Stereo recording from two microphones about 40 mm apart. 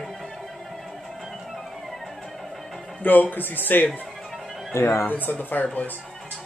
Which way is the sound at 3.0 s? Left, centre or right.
Left.